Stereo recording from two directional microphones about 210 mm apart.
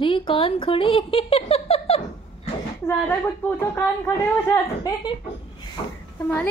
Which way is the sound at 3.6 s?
10° left (ahead or behind).